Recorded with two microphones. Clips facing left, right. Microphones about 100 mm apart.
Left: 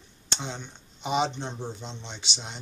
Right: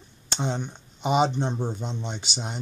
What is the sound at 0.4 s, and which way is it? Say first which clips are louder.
Speech: right 10 dB; 45° right (ahead or behind).